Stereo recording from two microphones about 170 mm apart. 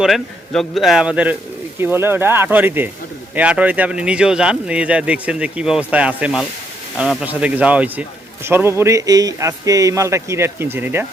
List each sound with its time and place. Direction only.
0.0 s a man's voice: centre (ahead or behind)